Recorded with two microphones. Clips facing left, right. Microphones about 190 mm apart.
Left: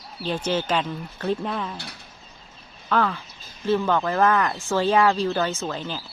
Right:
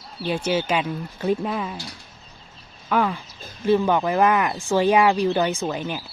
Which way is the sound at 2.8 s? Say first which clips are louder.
Right 1 dB; 15° right (ahead or behind).